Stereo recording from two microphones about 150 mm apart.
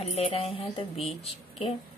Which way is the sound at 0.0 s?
40° left (ahead or behind).